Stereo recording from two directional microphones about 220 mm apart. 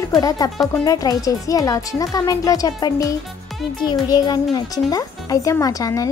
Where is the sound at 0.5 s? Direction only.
Centre (ahead or behind).